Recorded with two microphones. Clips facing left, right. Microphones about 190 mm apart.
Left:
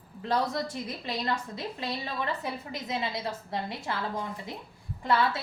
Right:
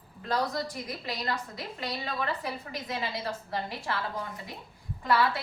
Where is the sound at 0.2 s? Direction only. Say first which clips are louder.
Left 1 dB; 25° left (ahead or behind).